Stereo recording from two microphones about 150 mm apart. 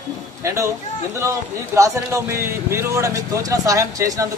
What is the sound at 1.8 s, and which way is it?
Speech, 20° right (ahead or behind).